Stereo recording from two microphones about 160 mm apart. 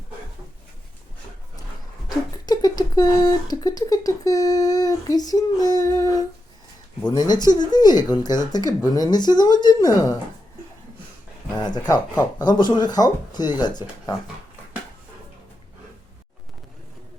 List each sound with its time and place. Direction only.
2.5 s a sound: 25° left (ahead or behind)
7.1 s speech: 25° left (ahead or behind)
11.6 s speech: 25° left (ahead or behind)